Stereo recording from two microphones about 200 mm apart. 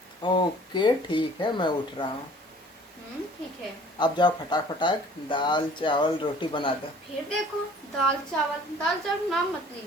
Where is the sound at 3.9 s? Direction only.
20° left (ahead or behind).